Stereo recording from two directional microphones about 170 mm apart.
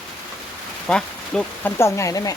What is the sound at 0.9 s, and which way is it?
Speech, 10° left (ahead or behind).